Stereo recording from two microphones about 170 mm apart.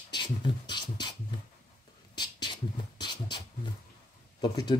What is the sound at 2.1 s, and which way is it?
Beatboxing, 25° left (ahead or behind).